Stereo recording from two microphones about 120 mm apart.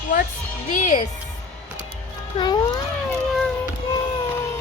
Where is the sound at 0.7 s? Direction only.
90° left.